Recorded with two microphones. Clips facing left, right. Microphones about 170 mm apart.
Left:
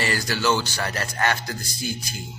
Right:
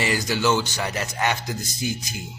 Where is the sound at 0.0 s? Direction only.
15° right (ahead or behind).